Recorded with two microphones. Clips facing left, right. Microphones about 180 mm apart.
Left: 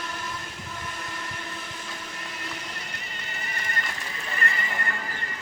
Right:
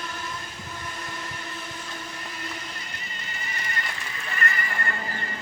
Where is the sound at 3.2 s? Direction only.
60° left (ahead or behind).